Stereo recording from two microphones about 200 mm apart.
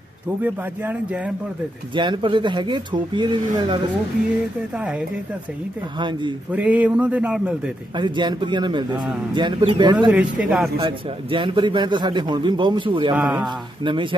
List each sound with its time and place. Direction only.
0.4 s a man's voice: 10° right (ahead or behind)
2.0 s a man's voice: 25° right (ahead or behind)
4.7 s a man's voice: 5° right (ahead or behind)
5.9 s a man's voice: 25° right (ahead or behind)
6.5 s a man's voice: 5° right (ahead or behind)
7.9 s a man's voice: 20° right (ahead or behind)
10.0 s speech: 5° right (ahead or behind)
10.8 s a man's voice: 25° right (ahead or behind)
13.1 s speech: 5° right (ahead or behind)